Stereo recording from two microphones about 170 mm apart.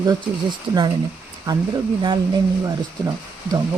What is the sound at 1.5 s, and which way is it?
Speech, 25° right (ahead or behind).